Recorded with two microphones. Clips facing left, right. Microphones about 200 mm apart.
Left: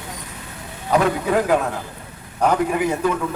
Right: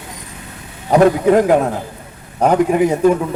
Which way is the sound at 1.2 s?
30° right (ahead or behind).